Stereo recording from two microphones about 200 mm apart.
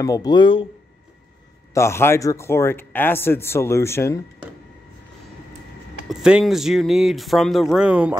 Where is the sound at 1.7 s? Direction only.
15° left (ahead or behind).